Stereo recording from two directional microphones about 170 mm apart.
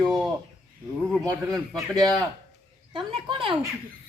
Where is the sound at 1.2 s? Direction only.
20° right (ahead or behind).